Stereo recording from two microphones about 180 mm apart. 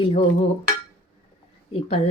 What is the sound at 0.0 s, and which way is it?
Speech, 35° left (ahead or behind).